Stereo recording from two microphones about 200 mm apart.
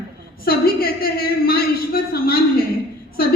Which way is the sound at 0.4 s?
50° left (ahead or behind).